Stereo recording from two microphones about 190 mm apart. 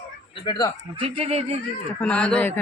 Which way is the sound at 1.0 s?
35° right (ahead or behind).